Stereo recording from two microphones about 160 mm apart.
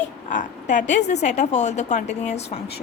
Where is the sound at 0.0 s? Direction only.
50° left (ahead or behind).